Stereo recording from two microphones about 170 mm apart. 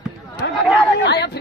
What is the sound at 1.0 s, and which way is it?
Speech, 80° left.